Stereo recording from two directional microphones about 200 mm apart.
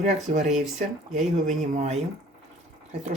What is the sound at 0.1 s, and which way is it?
Speech, 35° right (ahead or behind).